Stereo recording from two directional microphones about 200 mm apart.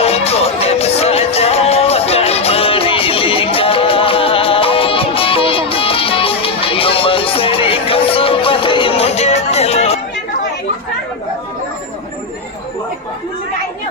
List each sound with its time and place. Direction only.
0.0 s music: 30° left (ahead or behind)